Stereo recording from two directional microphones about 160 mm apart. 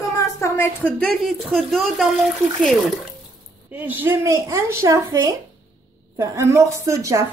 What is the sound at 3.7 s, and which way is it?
A woman's voice, 10° right (ahead or behind).